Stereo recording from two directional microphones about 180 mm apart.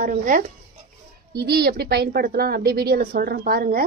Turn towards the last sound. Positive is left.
turn(degrees=-55)  # may be behind; listen again after turning